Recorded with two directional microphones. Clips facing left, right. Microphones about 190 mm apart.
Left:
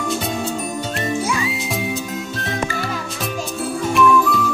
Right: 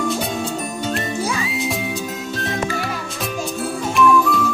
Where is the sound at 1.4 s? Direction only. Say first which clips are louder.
Even; centre (ahead or behind).